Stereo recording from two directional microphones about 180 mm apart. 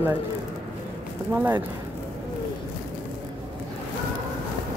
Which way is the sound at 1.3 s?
10° right (ahead or behind).